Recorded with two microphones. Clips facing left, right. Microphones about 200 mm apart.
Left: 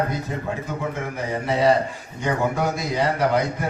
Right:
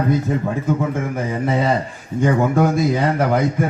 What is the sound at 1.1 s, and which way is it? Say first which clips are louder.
Speech: right 4 dB; 50° right (ahead or behind).